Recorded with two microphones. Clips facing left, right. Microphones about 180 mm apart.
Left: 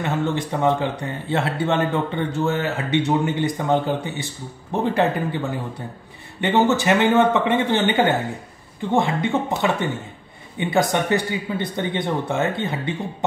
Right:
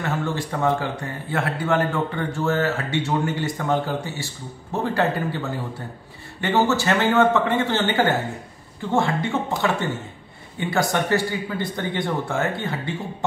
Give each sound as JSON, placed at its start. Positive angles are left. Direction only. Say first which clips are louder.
{"t": 0.0, "sound": "speech", "louder": "left 3 dB", "side_deg": 20}
{"t": 6.4, "sound": "speech", "louder": "left 2 dB", "side_deg": 20}